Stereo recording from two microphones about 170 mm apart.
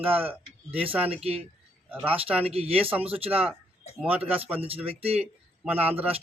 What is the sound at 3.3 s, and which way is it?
Speech, 10° right (ahead or behind).